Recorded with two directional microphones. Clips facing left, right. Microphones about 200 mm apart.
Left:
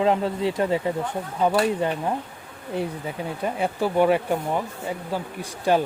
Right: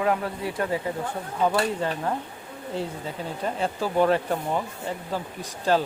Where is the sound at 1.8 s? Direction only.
15° left (ahead or behind).